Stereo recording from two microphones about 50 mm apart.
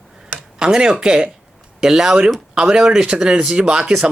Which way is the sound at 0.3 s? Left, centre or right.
Centre.